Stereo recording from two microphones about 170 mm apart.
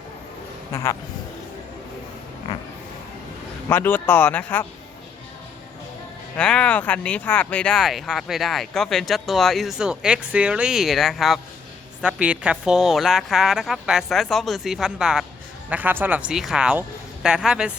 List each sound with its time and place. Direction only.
0.7 s a man's voice: 20° left (ahead or behind)
3.7 s speech: 10° left (ahead or behind)
6.3 s speech: 5° left (ahead or behind)